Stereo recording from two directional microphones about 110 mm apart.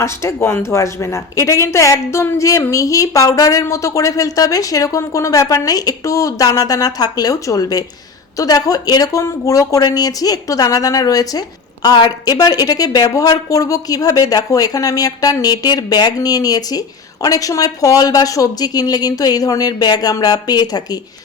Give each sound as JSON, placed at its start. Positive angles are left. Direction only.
{"t": 0.0, "sound": "speech", "side_deg": 25}